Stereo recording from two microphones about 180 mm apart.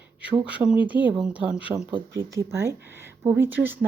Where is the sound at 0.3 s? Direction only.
5° right (ahead or behind).